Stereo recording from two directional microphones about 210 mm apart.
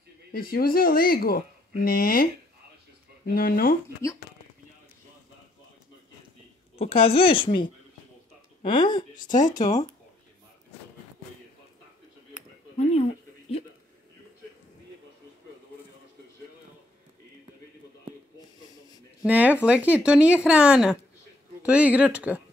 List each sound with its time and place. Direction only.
0.3 s speech: 45° left (ahead or behind)
3.3 s speech: 45° left (ahead or behind)
6.8 s speech: 25° left (ahead or behind)
8.7 s speech: 20° left (ahead or behind)
9.1 s speech: 35° left (ahead or behind)
19.2 s speech: 5° right (ahead or behind)